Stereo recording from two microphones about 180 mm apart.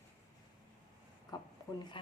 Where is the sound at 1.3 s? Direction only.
25° left (ahead or behind).